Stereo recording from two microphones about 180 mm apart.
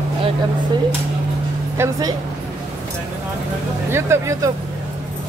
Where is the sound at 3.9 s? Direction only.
15° right (ahead or behind).